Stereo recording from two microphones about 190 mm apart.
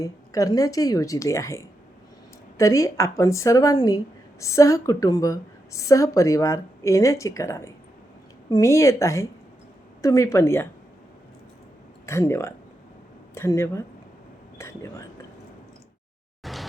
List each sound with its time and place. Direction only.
0.0 s speech: 20° left (ahead or behind)
12.0 s speech: 15° left (ahead or behind)
16.4 s a sound: centre (ahead or behind)